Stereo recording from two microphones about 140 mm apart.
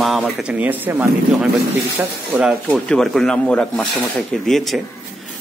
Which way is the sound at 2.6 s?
5° left (ahead or behind).